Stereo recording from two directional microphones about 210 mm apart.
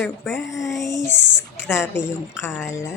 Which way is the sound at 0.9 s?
10° left (ahead or behind).